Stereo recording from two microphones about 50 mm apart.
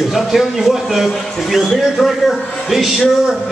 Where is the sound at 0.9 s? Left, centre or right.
Centre.